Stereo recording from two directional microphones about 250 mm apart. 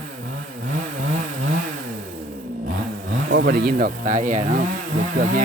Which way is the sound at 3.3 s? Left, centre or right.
Right.